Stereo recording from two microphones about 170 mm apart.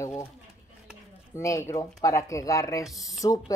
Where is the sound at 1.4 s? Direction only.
15° left (ahead or behind).